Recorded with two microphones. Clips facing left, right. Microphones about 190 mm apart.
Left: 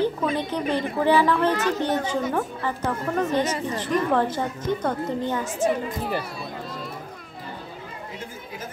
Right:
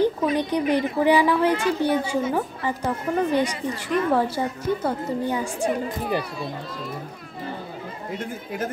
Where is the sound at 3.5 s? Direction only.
40° left (ahead or behind).